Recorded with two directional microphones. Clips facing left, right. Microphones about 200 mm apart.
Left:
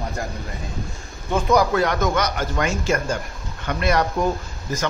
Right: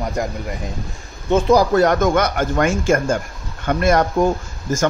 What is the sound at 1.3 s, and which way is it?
A man's voice, 35° right (ahead or behind).